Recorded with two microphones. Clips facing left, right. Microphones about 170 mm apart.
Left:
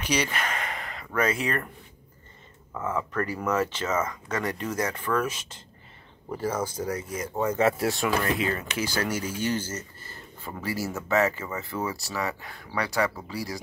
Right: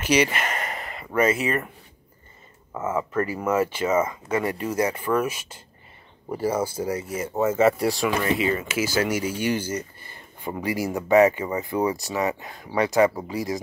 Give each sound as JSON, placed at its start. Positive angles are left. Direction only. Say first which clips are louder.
{"t": 0.0, "sound": "speech", "louder": "right 6 dB", "side_deg": -10}
{"t": 2.8, "sound": "speech", "louder": "right 4 dB", "side_deg": -5}